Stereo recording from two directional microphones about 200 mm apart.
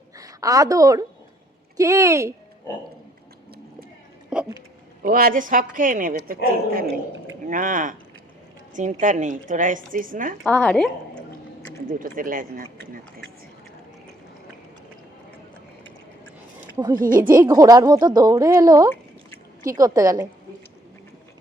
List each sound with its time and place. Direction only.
0.2 s a woman's voice: 15° right (ahead or behind)
4.3 s a sound: 5° right (ahead or behind)
5.0 s a woman's voice: 45° right (ahead or behind)
10.4 s a woman's voice: 5° left (ahead or behind)
11.9 s a woman's voice: 45° right (ahead or behind)
16.7 s speech: 20° right (ahead or behind)
17.0 s a woman's voice: 45° right (ahead or behind)
17.2 s a woman's voice: 15° right (ahead or behind)